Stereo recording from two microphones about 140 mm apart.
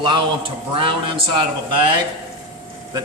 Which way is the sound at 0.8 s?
40° right (ahead or behind).